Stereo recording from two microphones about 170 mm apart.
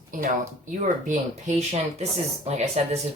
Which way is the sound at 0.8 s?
45° right (ahead or behind).